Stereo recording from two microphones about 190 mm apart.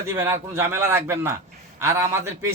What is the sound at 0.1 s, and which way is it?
A man's voice, 15° right (ahead or behind).